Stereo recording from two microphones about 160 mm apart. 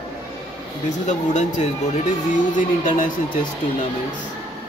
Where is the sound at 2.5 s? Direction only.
55° left (ahead or behind).